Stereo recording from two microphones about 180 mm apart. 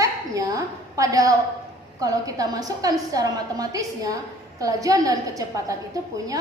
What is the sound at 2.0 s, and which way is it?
A woman's voice, 20° right (ahead or behind).